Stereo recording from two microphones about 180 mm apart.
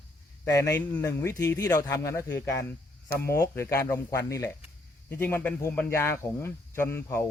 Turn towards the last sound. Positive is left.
turn(degrees=15)  # may be behind; listen again after turning